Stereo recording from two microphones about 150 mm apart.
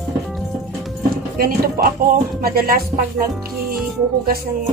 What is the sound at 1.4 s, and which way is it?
Speech, 75° right (ahead or behind).